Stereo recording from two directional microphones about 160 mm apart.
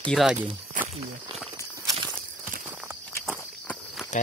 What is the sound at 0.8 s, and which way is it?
Wild animals, 55° right (ahead or behind).